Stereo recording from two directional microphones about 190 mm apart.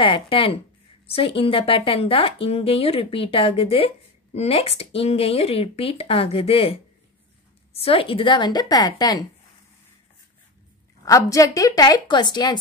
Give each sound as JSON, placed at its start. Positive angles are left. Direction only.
{"t": 0.0, "sound": "speech", "side_deg": 25}
{"t": 11.1, "sound": "speech", "side_deg": 15}